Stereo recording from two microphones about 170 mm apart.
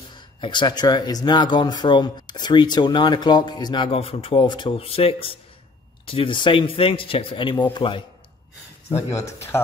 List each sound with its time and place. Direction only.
0.1 s speech: 25° left (ahead or behind)
8.8 s speech: 15° left (ahead or behind)